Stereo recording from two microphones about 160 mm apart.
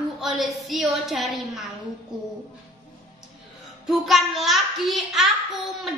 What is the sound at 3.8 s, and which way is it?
A child's voice, centre (ahead or behind).